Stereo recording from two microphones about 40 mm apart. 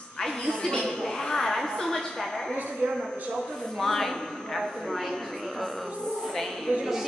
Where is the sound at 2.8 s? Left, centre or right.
Right.